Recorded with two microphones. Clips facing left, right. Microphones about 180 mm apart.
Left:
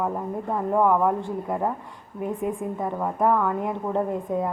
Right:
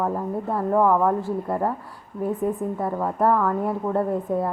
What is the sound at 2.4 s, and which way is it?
Speech, 15° left (ahead or behind).